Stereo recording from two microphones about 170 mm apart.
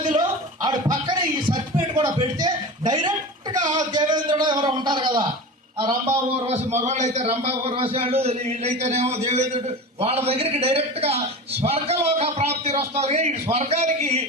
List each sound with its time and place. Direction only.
0.0 s music: 25° right (ahead or behind)
2.0 s a sound: 20° right (ahead or behind)
6.7 s a man's voice: 45° right (ahead or behind)